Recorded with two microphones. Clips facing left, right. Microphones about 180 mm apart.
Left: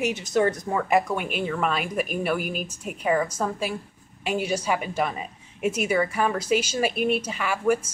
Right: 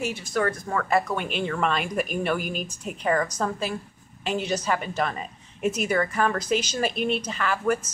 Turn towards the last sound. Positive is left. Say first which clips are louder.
# left 1 dB
turn(degrees=10)  # may be behind; listen again after turning